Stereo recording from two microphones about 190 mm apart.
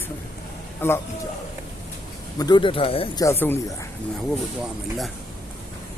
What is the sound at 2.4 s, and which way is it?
Speech, 25° left (ahead or behind).